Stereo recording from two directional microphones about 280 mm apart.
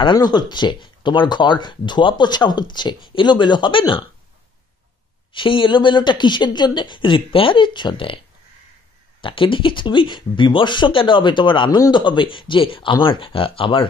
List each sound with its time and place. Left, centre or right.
0.0 s speech: centre
5.3 s speech: centre
9.2 s speech: centre